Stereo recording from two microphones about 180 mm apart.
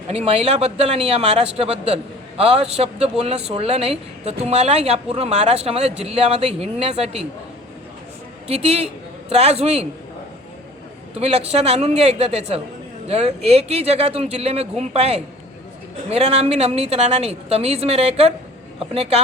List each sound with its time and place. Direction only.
0.1 s speech: 35° right (ahead or behind)
8.4 s speech: 35° right (ahead or behind)
11.1 s speech: 35° right (ahead or behind)